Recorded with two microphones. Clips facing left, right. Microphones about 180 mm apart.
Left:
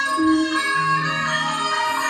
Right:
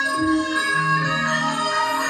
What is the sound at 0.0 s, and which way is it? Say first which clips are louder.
Music: left 3 dB; 40° right (ahead or behind).